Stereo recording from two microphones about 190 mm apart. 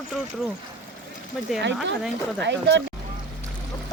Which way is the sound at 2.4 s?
70° right (ahead or behind).